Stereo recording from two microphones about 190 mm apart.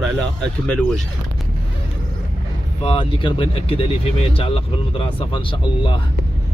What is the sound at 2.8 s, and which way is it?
Speech, 30° left (ahead or behind).